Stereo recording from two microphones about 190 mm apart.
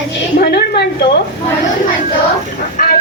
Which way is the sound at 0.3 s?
55° left (ahead or behind).